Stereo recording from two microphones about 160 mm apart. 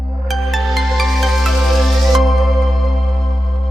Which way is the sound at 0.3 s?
Centre (ahead or behind).